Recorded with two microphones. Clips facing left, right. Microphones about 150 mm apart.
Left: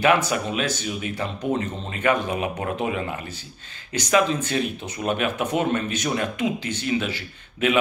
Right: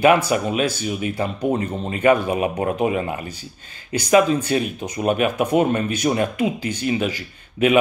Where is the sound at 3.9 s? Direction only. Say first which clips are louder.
Right 5 dB; 10° right (ahead or behind).